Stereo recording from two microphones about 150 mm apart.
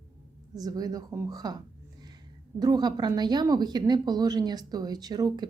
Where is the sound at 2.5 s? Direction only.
25° right (ahead or behind).